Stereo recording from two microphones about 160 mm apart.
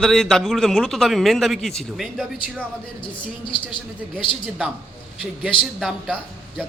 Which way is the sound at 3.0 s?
30° left (ahead or behind).